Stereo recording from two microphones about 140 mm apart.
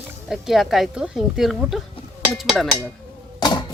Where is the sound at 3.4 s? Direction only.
30° left (ahead or behind).